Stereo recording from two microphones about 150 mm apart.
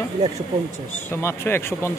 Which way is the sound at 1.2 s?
15° left (ahead or behind).